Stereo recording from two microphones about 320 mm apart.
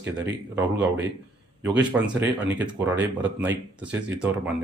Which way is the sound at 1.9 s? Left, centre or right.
Centre.